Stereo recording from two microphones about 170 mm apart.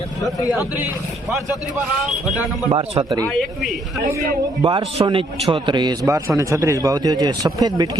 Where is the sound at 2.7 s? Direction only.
30° right (ahead or behind).